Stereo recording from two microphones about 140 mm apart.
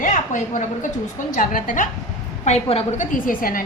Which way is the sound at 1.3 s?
75° left (ahead or behind).